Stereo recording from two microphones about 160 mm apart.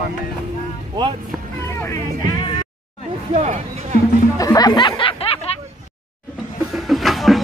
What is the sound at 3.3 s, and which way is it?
Speech, 45° right (ahead or behind).